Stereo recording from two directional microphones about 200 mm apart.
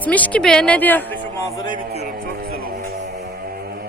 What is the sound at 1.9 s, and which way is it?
Music, 45° right (ahead or behind).